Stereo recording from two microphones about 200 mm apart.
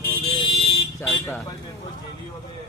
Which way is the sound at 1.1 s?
15° left (ahead or behind).